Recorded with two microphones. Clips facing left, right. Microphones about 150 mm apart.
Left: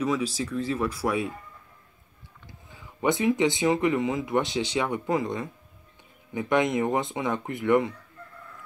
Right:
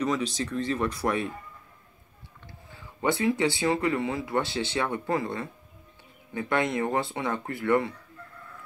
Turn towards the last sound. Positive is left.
turn(degrees=20)  # may be behind; listen again after turning